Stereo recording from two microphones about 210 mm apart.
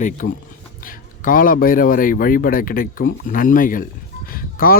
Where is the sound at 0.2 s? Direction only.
55° left (ahead or behind).